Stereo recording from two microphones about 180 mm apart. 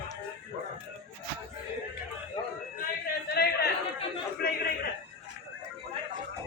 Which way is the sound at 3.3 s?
60° left (ahead or behind).